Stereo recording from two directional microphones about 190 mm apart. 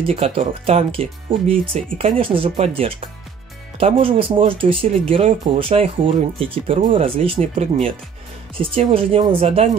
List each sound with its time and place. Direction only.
0.0 s speech: 35° right (ahead or behind)